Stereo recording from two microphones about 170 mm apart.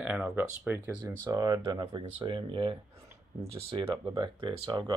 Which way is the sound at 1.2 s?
25° right (ahead or behind).